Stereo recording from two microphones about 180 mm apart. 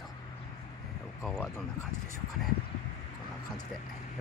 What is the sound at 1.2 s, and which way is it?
Speech, 5° left (ahead or behind).